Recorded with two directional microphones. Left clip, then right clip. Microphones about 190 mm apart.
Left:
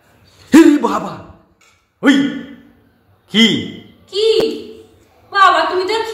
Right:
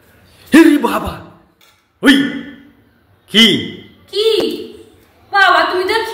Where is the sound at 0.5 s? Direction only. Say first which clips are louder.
Even; 20° left (ahead or behind).